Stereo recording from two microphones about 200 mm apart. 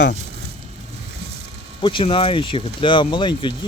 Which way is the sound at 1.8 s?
25° left (ahead or behind).